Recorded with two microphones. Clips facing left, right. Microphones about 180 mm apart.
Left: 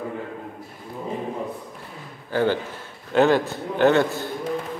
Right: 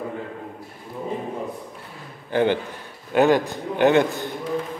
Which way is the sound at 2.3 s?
20° right (ahead or behind).